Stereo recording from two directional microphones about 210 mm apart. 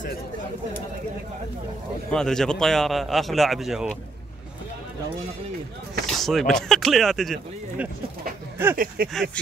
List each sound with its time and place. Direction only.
2.0 s speech: 5° left (ahead or behind)
6.0 s speech: centre (ahead or behind)
8.7 s speech: 45° right (ahead or behind)
9.1 s speech: centre (ahead or behind)